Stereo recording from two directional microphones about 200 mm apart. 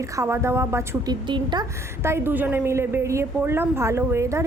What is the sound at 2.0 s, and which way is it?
A woman's voice, 10° right (ahead or behind).